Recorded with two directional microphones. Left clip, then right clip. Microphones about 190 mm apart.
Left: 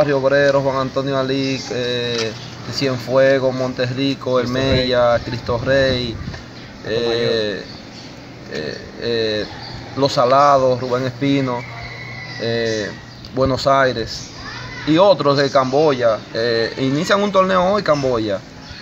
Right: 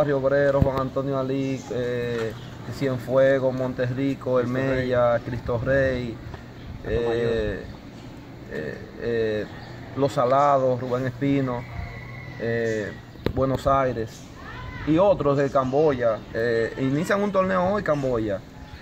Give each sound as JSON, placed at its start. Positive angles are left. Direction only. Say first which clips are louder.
{"t": 0.0, "sound": "speech", "louder": "left 6 dB", "side_deg": 0}
{"t": 1.3, "sound": "mantra", "louder": "left 7 dB", "side_deg": -20}
{"t": 1.8, "sound": "speech", "louder": "left 5 dB", "side_deg": 0}